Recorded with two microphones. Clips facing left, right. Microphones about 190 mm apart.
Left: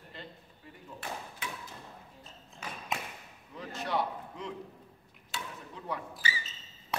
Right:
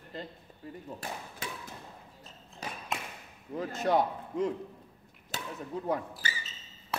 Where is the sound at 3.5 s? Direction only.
45° right (ahead or behind).